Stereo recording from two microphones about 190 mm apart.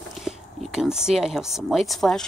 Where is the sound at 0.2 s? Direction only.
5° right (ahead or behind).